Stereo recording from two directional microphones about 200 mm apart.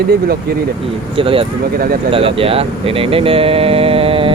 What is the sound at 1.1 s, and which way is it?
Speech, 25° right (ahead or behind).